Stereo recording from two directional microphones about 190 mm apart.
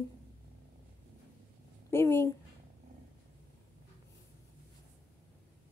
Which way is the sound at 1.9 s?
10° left (ahead or behind).